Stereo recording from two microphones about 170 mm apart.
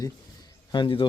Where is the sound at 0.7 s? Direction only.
30° left (ahead or behind).